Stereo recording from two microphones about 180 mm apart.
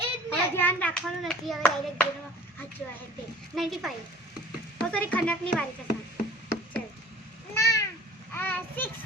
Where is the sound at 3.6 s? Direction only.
Centre (ahead or behind).